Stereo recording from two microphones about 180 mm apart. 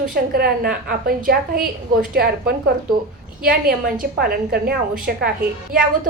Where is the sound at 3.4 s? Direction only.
55° right (ahead or behind).